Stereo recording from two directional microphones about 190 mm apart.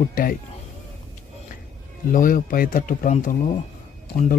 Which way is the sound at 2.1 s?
45° left (ahead or behind).